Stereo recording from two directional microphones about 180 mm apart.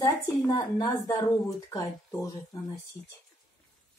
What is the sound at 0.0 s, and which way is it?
A woman's voice, 20° left (ahead or behind).